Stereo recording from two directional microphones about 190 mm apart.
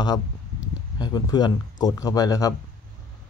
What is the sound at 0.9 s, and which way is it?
Speech, 20° left (ahead or behind).